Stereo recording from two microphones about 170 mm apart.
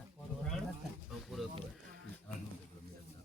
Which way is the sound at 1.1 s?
Centre (ahead or behind).